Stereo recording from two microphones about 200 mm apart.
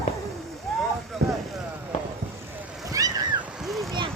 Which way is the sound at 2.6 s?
5° right (ahead or behind).